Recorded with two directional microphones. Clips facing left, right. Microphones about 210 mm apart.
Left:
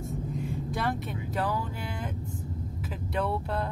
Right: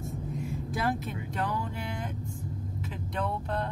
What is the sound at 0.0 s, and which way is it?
Vehicle, centre (ahead or behind).